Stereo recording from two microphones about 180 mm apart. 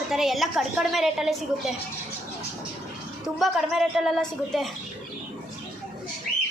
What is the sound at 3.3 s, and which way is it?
A woman's voice, centre (ahead or behind).